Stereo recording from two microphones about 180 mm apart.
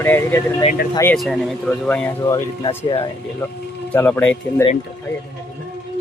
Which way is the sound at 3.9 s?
10° left (ahead or behind).